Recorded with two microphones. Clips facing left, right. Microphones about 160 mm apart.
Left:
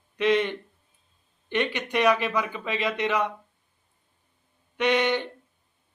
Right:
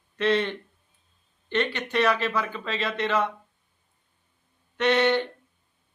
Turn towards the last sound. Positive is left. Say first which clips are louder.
# right 2 dB
turn(degrees=15)  # may be behind; listen again after turning